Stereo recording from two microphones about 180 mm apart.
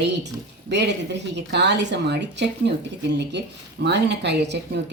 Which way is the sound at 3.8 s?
70° right (ahead or behind).